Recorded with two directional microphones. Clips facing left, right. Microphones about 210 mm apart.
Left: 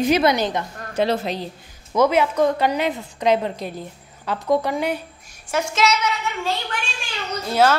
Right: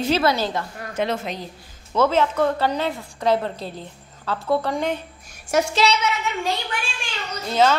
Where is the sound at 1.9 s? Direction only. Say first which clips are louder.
Left 2 dB; 15° left (ahead or behind).